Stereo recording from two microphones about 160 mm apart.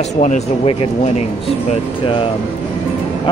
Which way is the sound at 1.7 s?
35° left (ahead or behind).